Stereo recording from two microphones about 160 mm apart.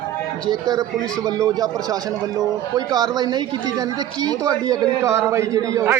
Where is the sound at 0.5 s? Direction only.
25° right (ahead or behind).